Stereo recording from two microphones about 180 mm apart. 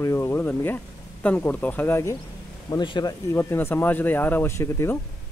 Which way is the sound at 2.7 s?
25° left (ahead or behind).